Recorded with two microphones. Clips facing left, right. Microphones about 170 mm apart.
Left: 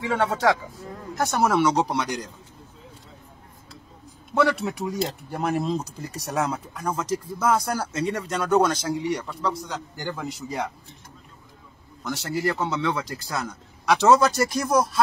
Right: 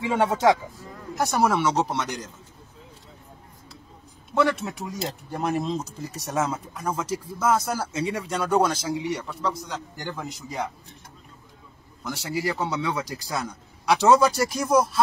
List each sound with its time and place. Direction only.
0.0 s speech: 15° right (ahead or behind)
1.1 s speech: 5° right (ahead or behind)
4.3 s speech: centre (ahead or behind)
12.2 s speech: 10° right (ahead or behind)